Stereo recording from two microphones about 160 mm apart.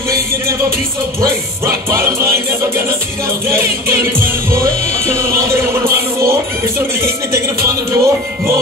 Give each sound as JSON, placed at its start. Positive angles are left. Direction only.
{"t": 1.2, "sound": "music", "side_deg": -20}
{"t": 3.4, "sound": "music", "side_deg": -15}
{"t": 7.0, "sound": "speech", "side_deg": -20}